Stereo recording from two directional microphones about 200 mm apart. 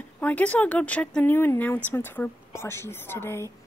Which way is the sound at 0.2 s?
5° left (ahead or behind).